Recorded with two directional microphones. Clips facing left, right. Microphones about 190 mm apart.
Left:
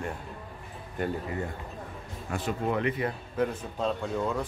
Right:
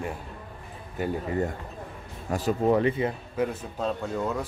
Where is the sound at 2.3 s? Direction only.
40° right (ahead or behind).